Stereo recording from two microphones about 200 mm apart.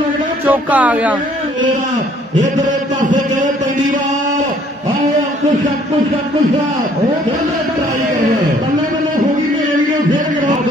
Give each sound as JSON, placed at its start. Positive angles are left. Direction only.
{"t": 0.5, "sound": "speech", "side_deg": -10}